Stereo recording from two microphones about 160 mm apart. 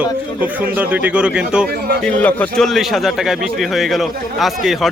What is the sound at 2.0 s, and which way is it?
A man's voice, 10° left (ahead or behind).